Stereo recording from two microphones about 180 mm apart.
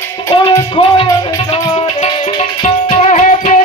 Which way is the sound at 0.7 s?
30° left (ahead or behind).